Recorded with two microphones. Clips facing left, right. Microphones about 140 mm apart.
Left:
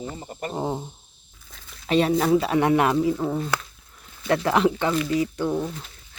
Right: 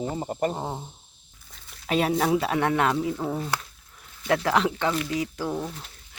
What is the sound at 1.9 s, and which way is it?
Speech, 5° right (ahead or behind).